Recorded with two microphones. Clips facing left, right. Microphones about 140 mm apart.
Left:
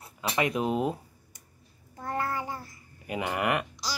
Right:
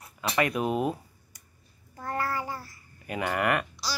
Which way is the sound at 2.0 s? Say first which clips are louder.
Even; 20° left (ahead or behind).